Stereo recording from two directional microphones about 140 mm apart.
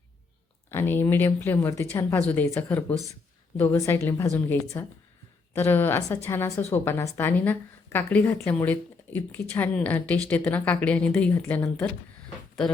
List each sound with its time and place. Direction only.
0.7 s a woman's voice: 15° left (ahead or behind)